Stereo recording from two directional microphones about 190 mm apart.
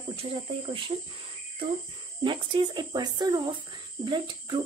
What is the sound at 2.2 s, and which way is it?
Speech, 25° right (ahead or behind).